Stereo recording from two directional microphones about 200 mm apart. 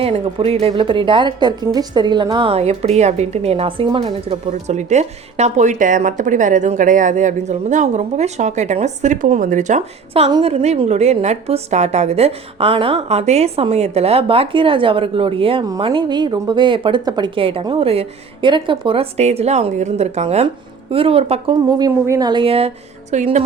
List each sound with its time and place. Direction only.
0.0 s a woman's voice: 30° right (ahead or behind)
21.7 s a woman's voice: 20° right (ahead or behind); by 23.4 s 35° right (ahead or behind)